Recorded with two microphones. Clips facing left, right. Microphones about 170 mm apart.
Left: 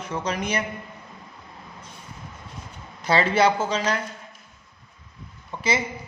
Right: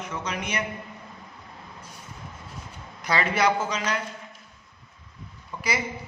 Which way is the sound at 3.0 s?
30° left (ahead or behind).